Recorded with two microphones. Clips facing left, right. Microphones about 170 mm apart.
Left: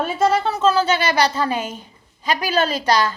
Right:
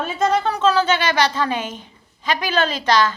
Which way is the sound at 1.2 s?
40° left (ahead or behind).